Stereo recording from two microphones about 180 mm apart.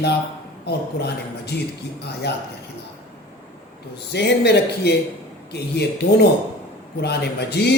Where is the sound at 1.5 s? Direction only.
65° left (ahead or behind).